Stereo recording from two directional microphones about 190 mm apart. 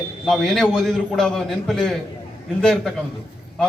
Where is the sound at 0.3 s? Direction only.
Centre (ahead or behind).